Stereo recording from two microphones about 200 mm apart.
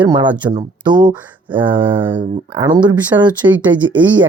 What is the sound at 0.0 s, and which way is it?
Speech, 25° right (ahead or behind).